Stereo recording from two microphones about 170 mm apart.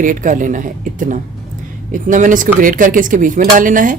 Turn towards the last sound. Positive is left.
turn(degrees=-50)  # may be behind; listen again after turning